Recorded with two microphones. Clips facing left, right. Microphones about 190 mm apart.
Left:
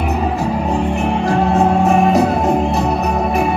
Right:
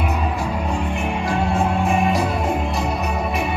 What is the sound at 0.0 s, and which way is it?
Music, 40° left (ahead or behind).